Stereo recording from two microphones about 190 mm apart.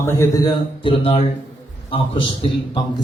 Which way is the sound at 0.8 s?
30° left (ahead or behind).